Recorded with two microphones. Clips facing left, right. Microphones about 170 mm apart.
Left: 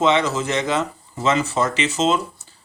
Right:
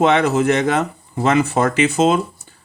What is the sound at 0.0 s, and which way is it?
Speech, 55° right (ahead or behind).